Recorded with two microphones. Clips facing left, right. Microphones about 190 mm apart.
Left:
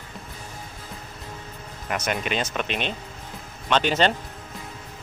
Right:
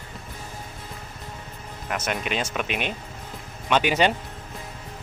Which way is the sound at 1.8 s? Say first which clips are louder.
Left 1 dB; centre (ahead or behind).